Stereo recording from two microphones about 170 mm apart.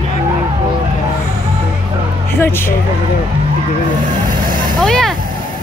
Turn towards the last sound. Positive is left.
turn(degrees=5)  # may be behind; listen again after turning